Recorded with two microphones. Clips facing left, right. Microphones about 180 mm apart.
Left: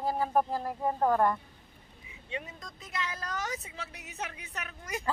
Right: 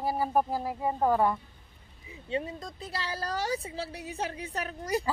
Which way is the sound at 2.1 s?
30° right (ahead or behind).